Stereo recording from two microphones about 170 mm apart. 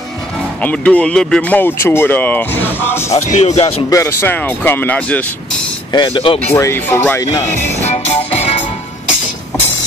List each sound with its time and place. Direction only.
0.6 s speech: 10° left (ahead or behind)
3.3 s speech: 40° left (ahead or behind)
3.9 s speech: 15° left (ahead or behind)
5.9 s speech: 30° left (ahead or behind)
6.5 s speech: 15° left (ahead or behind)
7.5 s music: 40° left (ahead or behind)